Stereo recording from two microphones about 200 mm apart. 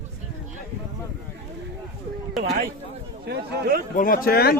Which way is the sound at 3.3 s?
55° right (ahead or behind).